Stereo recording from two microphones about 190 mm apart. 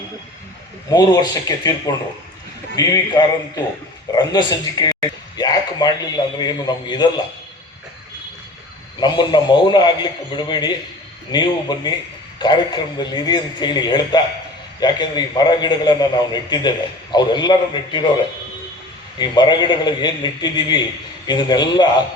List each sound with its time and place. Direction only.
0.9 s a man's voice: 20° left (ahead or behind)
2.7 s a man's voice: 20° left (ahead or behind)
9.0 s a man's voice: 25° left (ahead or behind)
19.2 s a man's voice: 25° left (ahead or behind)